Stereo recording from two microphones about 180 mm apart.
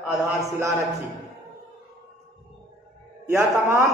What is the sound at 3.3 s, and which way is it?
Speech, 15° right (ahead or behind).